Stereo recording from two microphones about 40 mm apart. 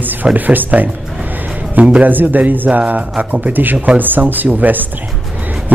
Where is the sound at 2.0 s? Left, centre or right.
Right.